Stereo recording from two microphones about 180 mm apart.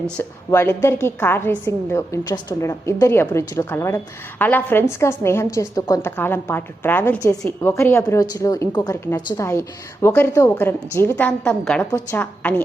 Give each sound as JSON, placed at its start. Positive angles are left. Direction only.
{"t": 0.2, "sound": "a woman's voice", "side_deg": 10}